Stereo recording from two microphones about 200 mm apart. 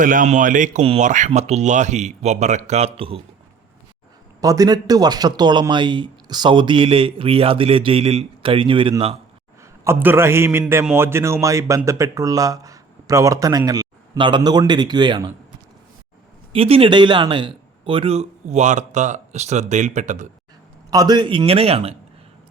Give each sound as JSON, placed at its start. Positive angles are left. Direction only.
{"t": 0.0, "sound": "a man's voice", "side_deg": -40}
{"t": 4.4, "sound": "speech", "side_deg": -15}
{"t": 9.8, "sound": "a man's voice", "side_deg": -10}
{"t": 16.5, "sound": "a man's voice", "side_deg": -30}
{"t": 20.9, "sound": "speech", "side_deg": -20}